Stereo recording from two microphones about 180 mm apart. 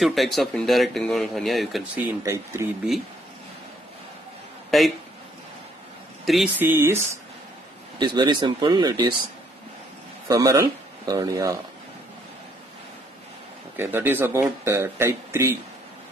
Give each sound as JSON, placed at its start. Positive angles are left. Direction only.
{"t": 0.0, "sound": "speech", "side_deg": 0}
{"t": 2.2, "sound": "speech", "side_deg": -15}
{"t": 4.6, "sound": "a man's voice", "side_deg": 0}
{"t": 6.2, "sound": "speech", "side_deg": 0}
{"t": 6.6, "sound": "speech", "side_deg": -10}
{"t": 8.0, "sound": "speech", "side_deg": -25}
{"t": 10.2, "sound": "speech", "side_deg": -20}
{"t": 13.7, "sound": "speech", "side_deg": -10}